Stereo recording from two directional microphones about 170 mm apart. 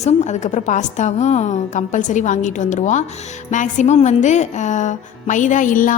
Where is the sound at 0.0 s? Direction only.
45° left (ahead or behind).